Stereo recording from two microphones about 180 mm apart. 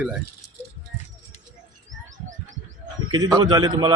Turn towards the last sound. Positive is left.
turn(degrees=-25)  # may be behind; listen again after turning